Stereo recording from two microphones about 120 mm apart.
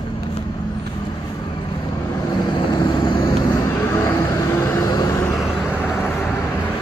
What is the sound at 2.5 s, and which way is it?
Vehicle, 35° left (ahead or behind).